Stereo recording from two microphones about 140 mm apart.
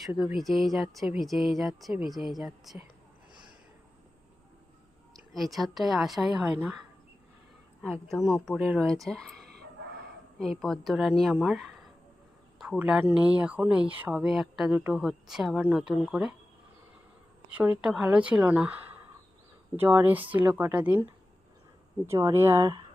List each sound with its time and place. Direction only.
0.2 s speech: centre (ahead or behind)
5.3 s speech: centre (ahead or behind)
8.4 s speech: centre (ahead or behind)
12.5 s a sound: 5° right (ahead or behind)
13.1 s speech: 5° right (ahead or behind)
17.5 s speech: 10° right (ahead or behind)
19.7 s speech: 15° right (ahead or behind)